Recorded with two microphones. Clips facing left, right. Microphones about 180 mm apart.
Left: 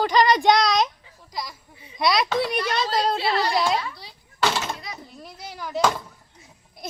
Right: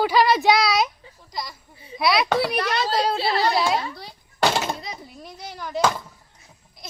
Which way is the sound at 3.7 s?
45° right (ahead or behind).